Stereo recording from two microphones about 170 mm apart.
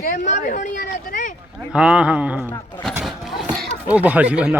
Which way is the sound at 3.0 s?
Centre (ahead or behind).